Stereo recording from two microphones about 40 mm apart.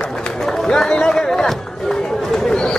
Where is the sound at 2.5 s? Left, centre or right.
Centre.